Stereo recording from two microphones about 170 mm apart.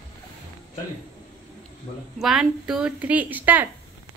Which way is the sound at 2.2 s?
Centre (ahead or behind).